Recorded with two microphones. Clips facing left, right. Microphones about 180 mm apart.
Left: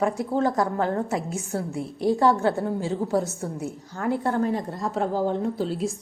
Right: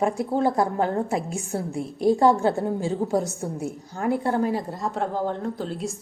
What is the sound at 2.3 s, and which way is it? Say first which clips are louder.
A woman's voice: right 1 dB; 15° right (ahead or behind).